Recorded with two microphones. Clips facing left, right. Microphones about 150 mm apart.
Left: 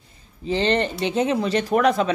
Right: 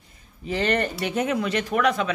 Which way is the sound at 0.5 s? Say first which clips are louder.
Left 3 dB; 25° left (ahead or behind).